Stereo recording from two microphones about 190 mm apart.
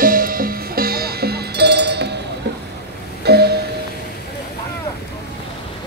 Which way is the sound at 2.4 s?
65° right (ahead or behind).